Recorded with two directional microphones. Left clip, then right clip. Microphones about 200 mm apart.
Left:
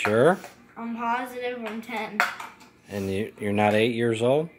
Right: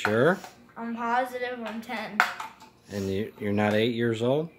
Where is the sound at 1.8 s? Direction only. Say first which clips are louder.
Left 2 dB; 20° right (ahead or behind).